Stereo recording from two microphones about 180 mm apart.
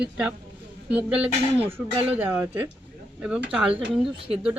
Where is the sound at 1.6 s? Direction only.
35° right (ahead or behind).